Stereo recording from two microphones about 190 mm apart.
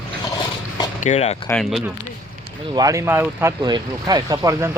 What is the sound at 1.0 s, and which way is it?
Speech, 35° left (ahead or behind).